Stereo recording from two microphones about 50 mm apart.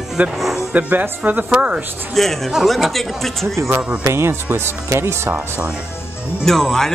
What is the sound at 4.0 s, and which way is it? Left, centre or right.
Speech, right.